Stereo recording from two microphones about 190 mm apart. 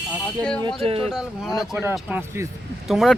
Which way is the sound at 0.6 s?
30° right (ahead or behind).